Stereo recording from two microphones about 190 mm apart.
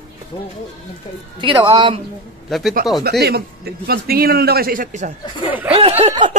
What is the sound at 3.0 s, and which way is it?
A man's voice, 55° right (ahead or behind).